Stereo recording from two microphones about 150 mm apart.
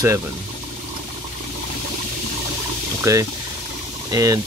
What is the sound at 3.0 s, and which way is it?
Speech, 20° right (ahead or behind).